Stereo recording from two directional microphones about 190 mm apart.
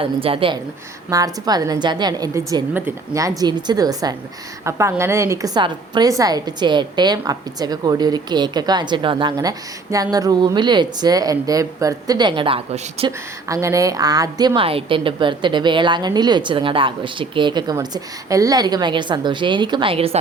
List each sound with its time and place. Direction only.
0.0 s a woman's voice: 30° right (ahead or behind)
13.1 s a woman's voice: 15° right (ahead or behind)